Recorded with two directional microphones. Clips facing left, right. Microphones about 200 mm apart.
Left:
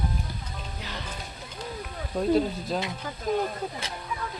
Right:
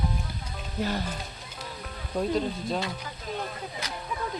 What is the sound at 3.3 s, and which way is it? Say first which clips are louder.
Speech: left 9 dB; 45° left (ahead or behind).